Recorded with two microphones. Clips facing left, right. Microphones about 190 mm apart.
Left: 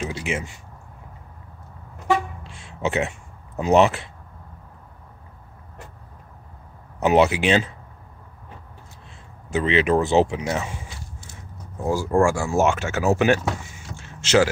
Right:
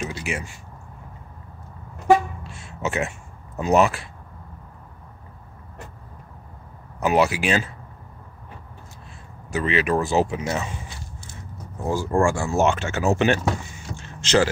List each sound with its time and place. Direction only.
0.0 s a sound: 20° left (ahead or behind)
2.4 s a sound: 15° left (ahead or behind)
7.0 s speech: 20° left (ahead or behind)
9.5 s speech: 20° left (ahead or behind)
11.9 s speech: 10° left (ahead or behind)
13.9 s vehicle: 5° left (ahead or behind)